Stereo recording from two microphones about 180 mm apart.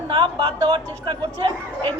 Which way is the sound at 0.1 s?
25° right (ahead or behind).